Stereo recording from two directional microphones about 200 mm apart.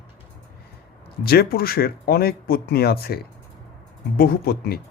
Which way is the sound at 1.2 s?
50° left (ahead or behind).